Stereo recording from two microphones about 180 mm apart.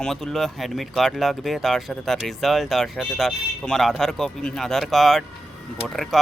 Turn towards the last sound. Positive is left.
turn(degrees=0)  # may be behind; listen again after turning